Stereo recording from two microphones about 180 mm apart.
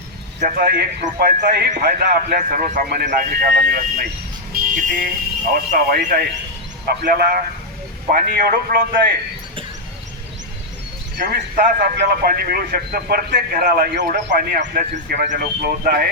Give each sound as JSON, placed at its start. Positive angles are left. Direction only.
{"t": 0.3, "sound": "speech", "side_deg": -50}
{"t": 4.5, "sound": "vehicle", "side_deg": -50}
{"t": 5.5, "sound": "a man's voice", "side_deg": -55}
{"t": 11.2, "sound": "a man's voice", "side_deg": -50}